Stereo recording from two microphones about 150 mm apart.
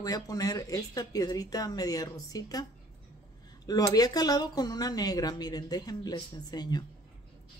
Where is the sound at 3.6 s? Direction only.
25° left (ahead or behind).